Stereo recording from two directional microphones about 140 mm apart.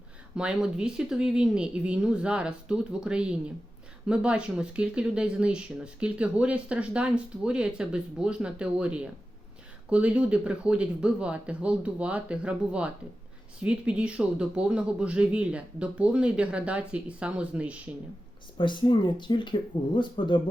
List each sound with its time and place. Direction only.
0.3 s speech: 5° right (ahead or behind)
18.5 s speech: 35° left (ahead or behind)